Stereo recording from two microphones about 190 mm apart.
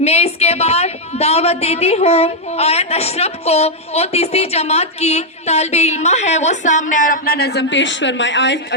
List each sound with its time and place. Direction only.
0.0 s a woman's voice: 35° left (ahead or behind); by 8.6 s 70° left (ahead or behind)